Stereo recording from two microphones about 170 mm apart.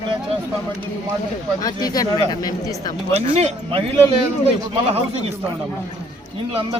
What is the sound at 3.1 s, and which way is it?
Speech, 40° right (ahead or behind).